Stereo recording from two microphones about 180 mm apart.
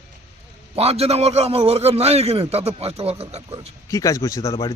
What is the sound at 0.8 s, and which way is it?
A man's voice, 35° right (ahead or behind).